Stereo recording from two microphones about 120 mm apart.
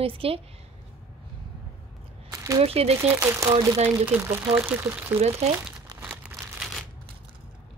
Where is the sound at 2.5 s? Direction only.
55° right (ahead or behind).